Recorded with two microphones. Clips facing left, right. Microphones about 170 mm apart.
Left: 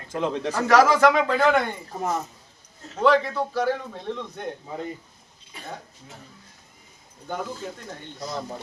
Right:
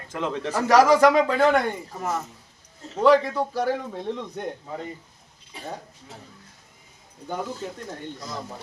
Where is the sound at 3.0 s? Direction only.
10° right (ahead or behind).